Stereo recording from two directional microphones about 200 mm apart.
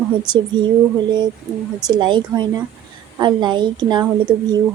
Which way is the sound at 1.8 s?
20° right (ahead or behind).